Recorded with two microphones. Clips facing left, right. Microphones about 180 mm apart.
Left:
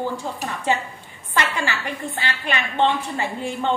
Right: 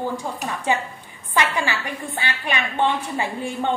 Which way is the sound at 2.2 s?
15° right (ahead or behind).